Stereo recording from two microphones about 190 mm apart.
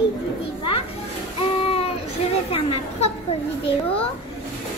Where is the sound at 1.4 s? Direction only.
30° left (ahead or behind).